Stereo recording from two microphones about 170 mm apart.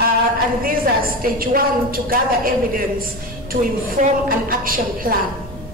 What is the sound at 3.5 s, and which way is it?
A woman's voice, 55° right (ahead or behind).